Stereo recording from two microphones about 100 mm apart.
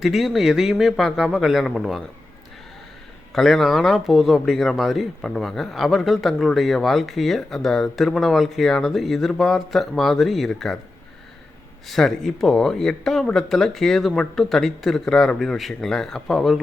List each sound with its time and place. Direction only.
0.0 s a man's voice: centre (ahead or behind)
3.3 s a man's voice: centre (ahead or behind)
11.9 s a man's voice: 5° left (ahead or behind)